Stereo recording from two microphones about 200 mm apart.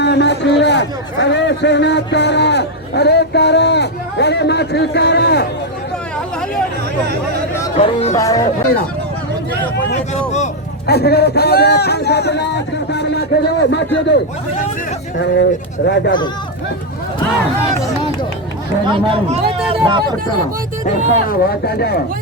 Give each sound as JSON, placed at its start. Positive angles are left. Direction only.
{"t": 0.0, "sound": "a man's voice", "side_deg": 60}
{"t": 7.8, "sound": "speech", "side_deg": 30}
{"t": 8.1, "sound": "speech", "side_deg": 15}
{"t": 9.7, "sound": "speech", "side_deg": 60}
{"t": 15.2, "sound": "speech", "side_deg": 55}
{"t": 18.9, "sound": "speech", "side_deg": -25}
{"t": 21.2, "sound": "speech", "side_deg": 50}